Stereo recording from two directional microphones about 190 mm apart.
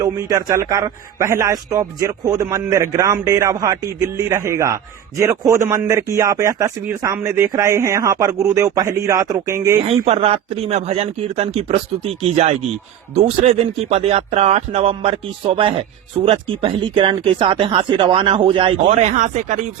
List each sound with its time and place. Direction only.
0.0 s a man's voice: 20° right (ahead or behind)
10.2 s speech: 30° right (ahead or behind)
18.9 s speech: 40° right (ahead or behind)